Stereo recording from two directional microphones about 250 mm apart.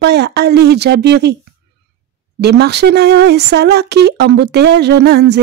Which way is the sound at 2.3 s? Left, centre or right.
Right.